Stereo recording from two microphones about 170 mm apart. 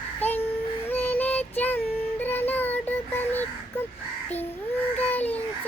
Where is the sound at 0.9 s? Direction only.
10° left (ahead or behind).